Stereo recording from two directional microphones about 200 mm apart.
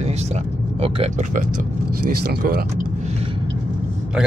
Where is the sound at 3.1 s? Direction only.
30° right (ahead or behind).